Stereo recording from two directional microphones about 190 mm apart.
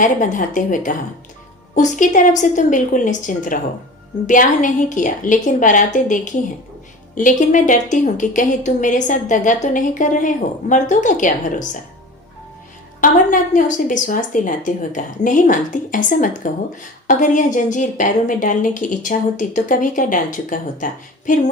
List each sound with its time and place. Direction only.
0.0 s a woman's voice: 45° left (ahead or behind)
13.0 s a woman's voice: 45° left (ahead or behind)